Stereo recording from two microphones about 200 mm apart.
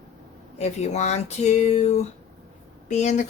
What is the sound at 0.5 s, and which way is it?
Speech, 35° left (ahead or behind).